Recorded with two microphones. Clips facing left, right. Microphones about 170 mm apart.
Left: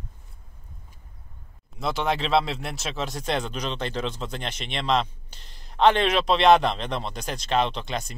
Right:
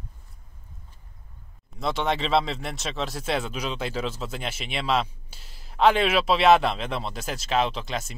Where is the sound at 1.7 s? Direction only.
Centre (ahead or behind).